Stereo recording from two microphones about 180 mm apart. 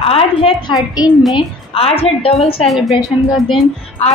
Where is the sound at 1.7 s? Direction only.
35° left (ahead or behind).